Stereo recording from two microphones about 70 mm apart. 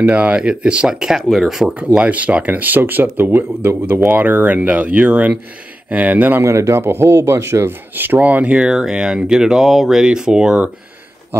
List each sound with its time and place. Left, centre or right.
0.0 s speech: centre
2.0 s speech: right
6.4 s speech: right; by 10.7 s centre